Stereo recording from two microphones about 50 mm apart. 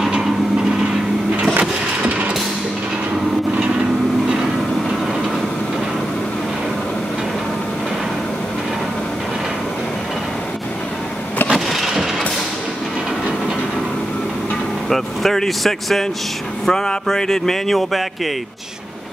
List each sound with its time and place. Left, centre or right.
1.6 s a sound: right
11.5 s vehicle: centre
14.9 s vehicle: centre
16.6 s speech: centre